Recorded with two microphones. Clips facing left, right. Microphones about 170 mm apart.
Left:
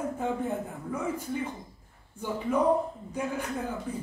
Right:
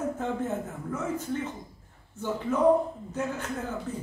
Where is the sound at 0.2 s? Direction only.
10° left (ahead or behind).